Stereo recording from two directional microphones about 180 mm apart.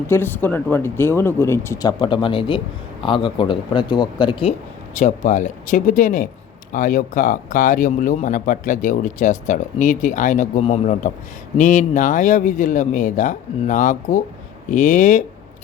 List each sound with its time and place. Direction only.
0.1 s a man's voice: 10° left (ahead or behind); by 4.5 s 25° left (ahead or behind)
4.9 s speech: 40° left (ahead or behind)